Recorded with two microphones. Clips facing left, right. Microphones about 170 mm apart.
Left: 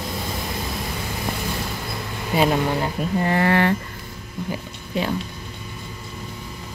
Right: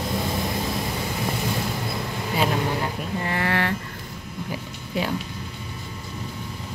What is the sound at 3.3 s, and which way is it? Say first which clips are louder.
Speech: left 6 dB; 30° left (ahead or behind).